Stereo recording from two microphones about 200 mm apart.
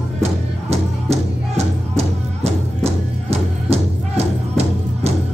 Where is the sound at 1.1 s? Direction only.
30° right (ahead or behind).